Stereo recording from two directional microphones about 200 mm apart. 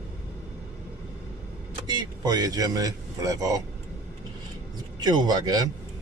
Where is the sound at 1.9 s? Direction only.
20° right (ahead or behind).